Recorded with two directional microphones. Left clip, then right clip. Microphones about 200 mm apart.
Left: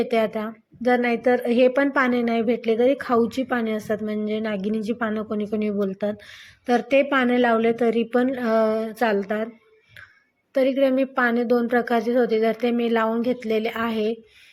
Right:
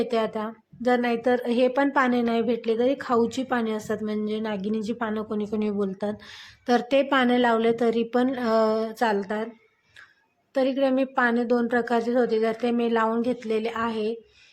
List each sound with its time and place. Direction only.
0.0 s a woman's voice: 5° left (ahead or behind)
10.5 s a woman's voice: 5° left (ahead or behind)